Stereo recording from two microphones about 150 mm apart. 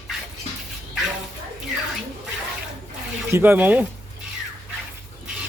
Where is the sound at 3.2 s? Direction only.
15° right (ahead or behind).